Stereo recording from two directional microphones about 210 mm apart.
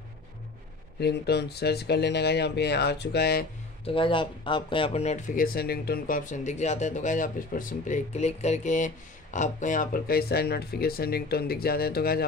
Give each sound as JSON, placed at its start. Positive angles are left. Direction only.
{"t": 0.9, "sound": "speech", "side_deg": 50}
{"t": 3.8, "sound": "speech", "side_deg": 25}